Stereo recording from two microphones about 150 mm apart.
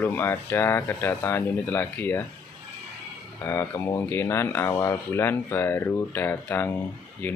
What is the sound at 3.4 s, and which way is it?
Speech, 15° left (ahead or behind).